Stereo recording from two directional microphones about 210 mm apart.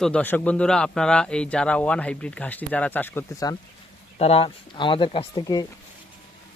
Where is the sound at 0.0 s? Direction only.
5° left (ahead or behind).